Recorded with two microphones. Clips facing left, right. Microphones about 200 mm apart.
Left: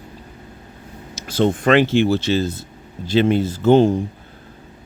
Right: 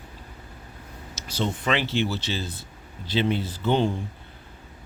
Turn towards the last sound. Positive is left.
turn(degrees=45)  # may be behind; listen again after turning